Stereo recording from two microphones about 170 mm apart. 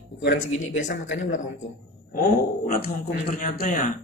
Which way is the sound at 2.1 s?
60° left (ahead or behind).